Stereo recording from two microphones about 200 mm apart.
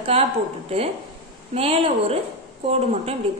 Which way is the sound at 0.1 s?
30° right (ahead or behind).